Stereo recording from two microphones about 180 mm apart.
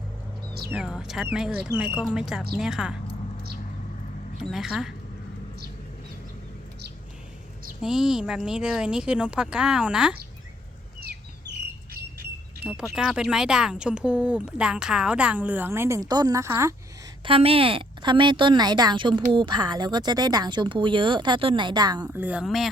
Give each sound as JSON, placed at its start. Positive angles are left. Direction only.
{"t": 0.7, "sound": "speech", "side_deg": -5}
{"t": 4.4, "sound": "speech", "side_deg": 0}
{"t": 7.8, "sound": "speech", "side_deg": -5}
{"t": 12.6, "sound": "speech", "side_deg": -5}
{"t": 17.2, "sound": "speech", "side_deg": -30}
{"t": 22.0, "sound": "a woman's voice", "side_deg": -10}